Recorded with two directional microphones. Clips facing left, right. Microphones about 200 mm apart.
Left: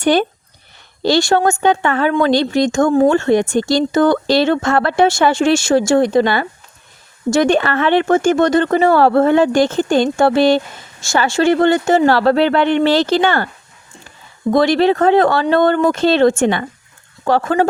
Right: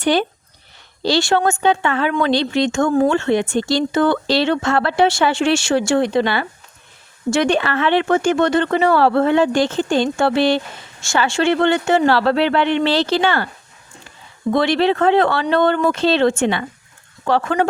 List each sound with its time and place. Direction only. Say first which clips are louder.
0.0 s speech: left 3 dB; 45° left (ahead or behind)
14.5 s speech: left 4 dB; 40° left (ahead or behind)